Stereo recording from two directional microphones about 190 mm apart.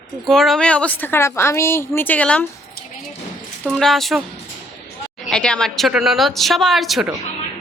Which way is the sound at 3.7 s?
Centre (ahead or behind).